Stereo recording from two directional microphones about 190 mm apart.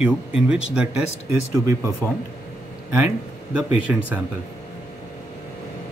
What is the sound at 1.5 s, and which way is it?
Speech, 20° right (ahead or behind).